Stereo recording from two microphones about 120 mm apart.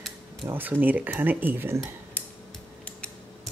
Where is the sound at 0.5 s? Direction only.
15° right (ahead or behind).